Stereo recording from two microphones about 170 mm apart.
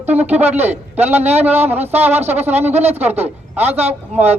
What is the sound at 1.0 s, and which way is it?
Speech, 40° right (ahead or behind).